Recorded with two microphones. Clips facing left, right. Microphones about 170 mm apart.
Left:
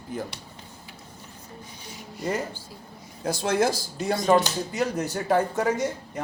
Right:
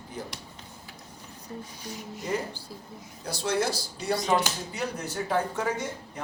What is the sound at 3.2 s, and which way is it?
Speech, 50° left (ahead or behind).